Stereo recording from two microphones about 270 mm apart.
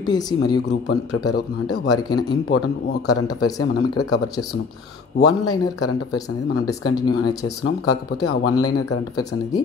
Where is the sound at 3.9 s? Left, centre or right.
Left.